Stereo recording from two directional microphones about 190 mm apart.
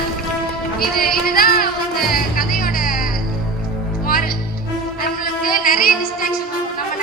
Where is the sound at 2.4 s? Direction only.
50° left (ahead or behind).